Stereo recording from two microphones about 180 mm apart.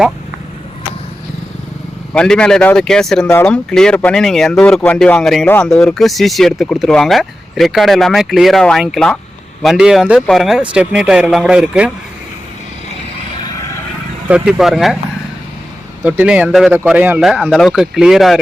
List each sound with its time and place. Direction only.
2.1 s speech: 5° left (ahead or behind)
14.3 s speech: 5° right (ahead or behind)
16.0 s speech: 5° right (ahead or behind)